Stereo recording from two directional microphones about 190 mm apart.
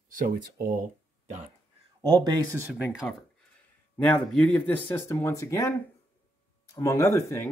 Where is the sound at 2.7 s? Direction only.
5° right (ahead or behind).